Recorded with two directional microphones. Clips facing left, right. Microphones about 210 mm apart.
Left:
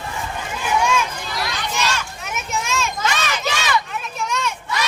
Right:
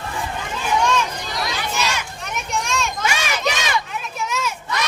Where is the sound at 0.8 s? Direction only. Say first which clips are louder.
Even; 5° left (ahead or behind).